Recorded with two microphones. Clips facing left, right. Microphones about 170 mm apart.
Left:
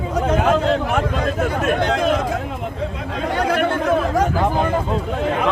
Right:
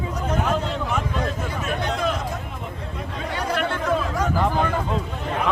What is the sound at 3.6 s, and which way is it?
Chatter, 50° left (ahead or behind).